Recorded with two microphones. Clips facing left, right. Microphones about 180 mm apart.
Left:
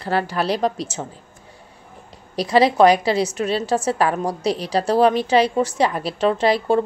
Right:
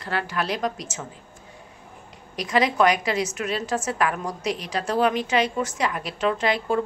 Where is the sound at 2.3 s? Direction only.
35° left (ahead or behind).